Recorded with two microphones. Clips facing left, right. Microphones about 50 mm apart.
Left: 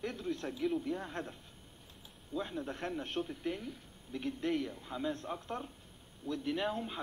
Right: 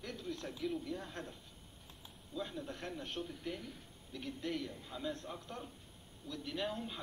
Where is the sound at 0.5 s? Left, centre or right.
Centre.